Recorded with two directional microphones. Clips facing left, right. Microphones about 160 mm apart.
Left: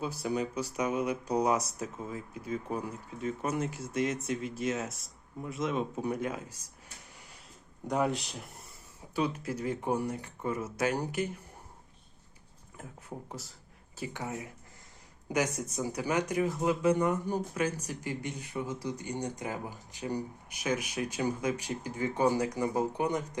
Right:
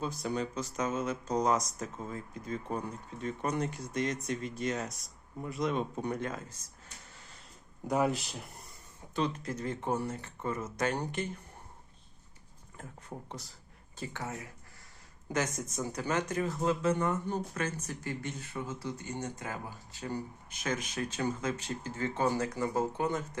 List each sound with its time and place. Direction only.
0.0 s speech: 10° left (ahead or behind)
7.9 s speech: centre (ahead or behind)
12.7 s speech: 5° left (ahead or behind)